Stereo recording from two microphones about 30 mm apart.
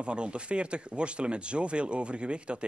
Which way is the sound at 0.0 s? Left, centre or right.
Right.